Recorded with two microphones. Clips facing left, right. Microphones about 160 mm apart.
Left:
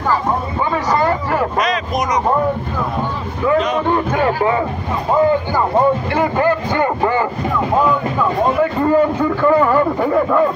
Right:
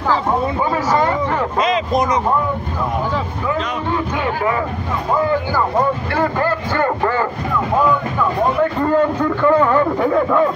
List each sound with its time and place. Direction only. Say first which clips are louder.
1.6 s speech: right 2 dB; 25° right (ahead or behind)
6.1 s a sound: left 2 dB; 15° left (ahead or behind)
8.9 s a man's voice: left 2 dB; 5° left (ahead or behind)